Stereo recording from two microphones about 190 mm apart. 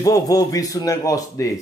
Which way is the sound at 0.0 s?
20° left (ahead or behind).